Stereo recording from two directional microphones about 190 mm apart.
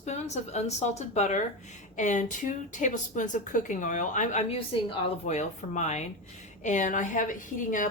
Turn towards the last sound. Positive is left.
turn(degrees=45)  # may be behind; listen again after turning